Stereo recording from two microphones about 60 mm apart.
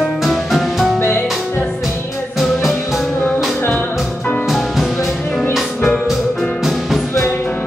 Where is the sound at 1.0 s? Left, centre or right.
Left.